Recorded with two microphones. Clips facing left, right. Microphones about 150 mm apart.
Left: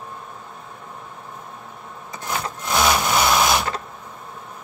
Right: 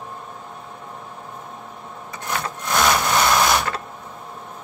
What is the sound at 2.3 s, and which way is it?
Wood, 10° left (ahead or behind).